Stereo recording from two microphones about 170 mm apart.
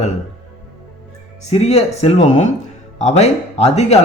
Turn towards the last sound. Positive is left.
turn(degrees=40)  # may be behind; listen again after turning